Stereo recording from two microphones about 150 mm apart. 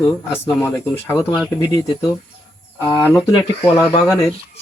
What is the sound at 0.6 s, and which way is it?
Speech, 15° left (ahead or behind).